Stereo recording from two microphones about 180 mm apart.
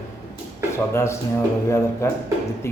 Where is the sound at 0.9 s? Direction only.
15° left (ahead or behind).